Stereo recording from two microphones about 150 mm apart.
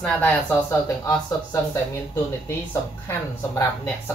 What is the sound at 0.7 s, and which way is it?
Speech, 20° left (ahead or behind).